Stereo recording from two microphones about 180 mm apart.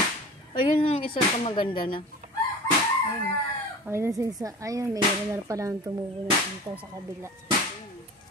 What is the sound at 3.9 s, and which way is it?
Speech, 15° right (ahead or behind).